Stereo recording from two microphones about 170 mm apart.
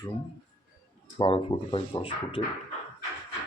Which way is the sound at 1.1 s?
30° left (ahead or behind).